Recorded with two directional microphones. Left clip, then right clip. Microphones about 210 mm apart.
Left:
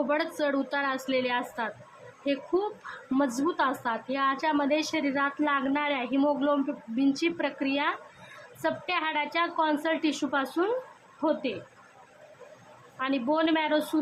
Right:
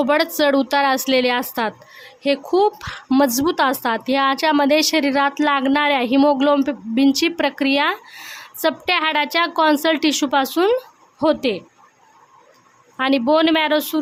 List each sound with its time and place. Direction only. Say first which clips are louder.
0.1 s a woman's voice: right 11 dB; 50° right (ahead or behind)
13.0 s a woman's voice: right 11 dB; 50° right (ahead or behind)